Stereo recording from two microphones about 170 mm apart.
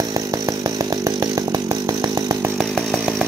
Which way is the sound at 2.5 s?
Centre (ahead or behind).